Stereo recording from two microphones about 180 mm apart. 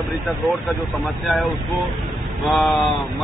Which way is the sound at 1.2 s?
Centre (ahead or behind).